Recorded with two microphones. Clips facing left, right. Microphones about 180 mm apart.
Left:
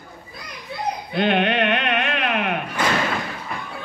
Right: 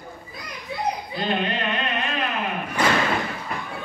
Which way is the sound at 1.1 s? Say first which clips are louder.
Left 6 dB; 70° left (ahead or behind).